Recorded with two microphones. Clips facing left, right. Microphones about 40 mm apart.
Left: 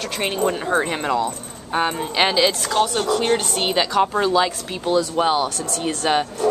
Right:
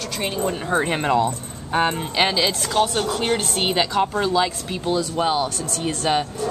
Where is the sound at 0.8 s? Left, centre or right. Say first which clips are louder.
Right 2 dB; centre.